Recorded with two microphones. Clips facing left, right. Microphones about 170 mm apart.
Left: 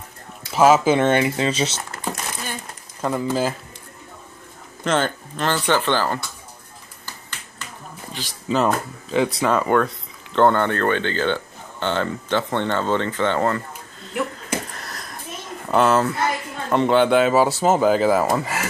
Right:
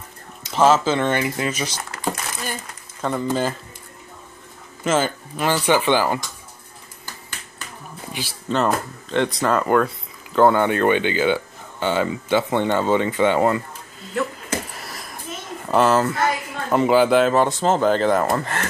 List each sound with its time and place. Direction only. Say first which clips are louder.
0.5 s speech: left 2 dB; 10° left (ahead or behind); by 1.8 s 25° left (ahead or behind)
3.0 s speech: even; 5° left (ahead or behind)
4.8 s speech: right 1 dB; 5° right (ahead or behind)
8.1 s speech: right 3 dB; 10° right (ahead or behind)
8.5 s speech: left 1 dB; 5° left (ahead or behind); by 13.6 s 10° right (ahead or behind)
14.7 s a woman's voice: even; 5° right (ahead or behind)